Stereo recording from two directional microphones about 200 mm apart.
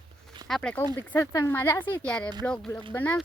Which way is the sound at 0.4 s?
5° left (ahead or behind).